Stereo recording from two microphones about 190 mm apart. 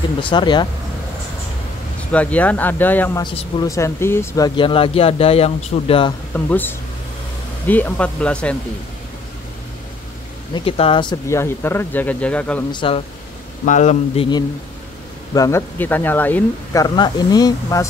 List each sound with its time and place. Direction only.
0.2 s a man's voice: 25° left (ahead or behind)
2.1 s speech: 10° left (ahead or behind)
3.2 s speech: 25° left (ahead or behind)
4.6 s a man's voice: 25° left (ahead or behind)
6.3 s speech: 10° left (ahead or behind)
10.5 s speech: 30° left (ahead or behind); by 12.6 s 5° left (ahead or behind)
12.7 s a man's voice: 30° left (ahead or behind)
13.7 s speech: 40° left (ahead or behind)
15.3 s speech: 15° left (ahead or behind)
16.8 s a man's voice: 20° left (ahead or behind)